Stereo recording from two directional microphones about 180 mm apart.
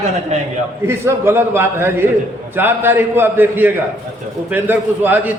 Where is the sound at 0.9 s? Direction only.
15° right (ahead or behind).